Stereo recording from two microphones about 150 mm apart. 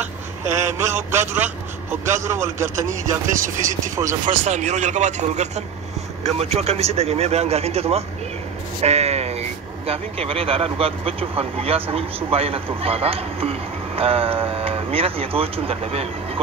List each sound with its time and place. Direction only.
0.6 s a man's voice: 15° right (ahead or behind)
3.3 s speech: 60° right (ahead or behind)
3.9 s speech: 20° right (ahead or behind)
4.2 s a man's voice: 50° right (ahead or behind)